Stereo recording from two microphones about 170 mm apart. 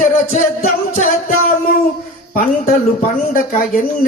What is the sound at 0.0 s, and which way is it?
Music, 45° left (ahead or behind).